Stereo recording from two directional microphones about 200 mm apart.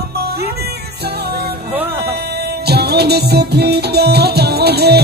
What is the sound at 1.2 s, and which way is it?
Music, 50° right (ahead or behind).